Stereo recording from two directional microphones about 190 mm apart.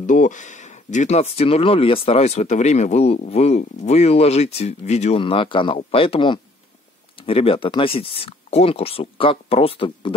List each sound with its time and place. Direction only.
0.0 s speech: 40° left (ahead or behind)